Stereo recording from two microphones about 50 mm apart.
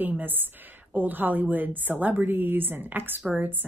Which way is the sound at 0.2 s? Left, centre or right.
Right.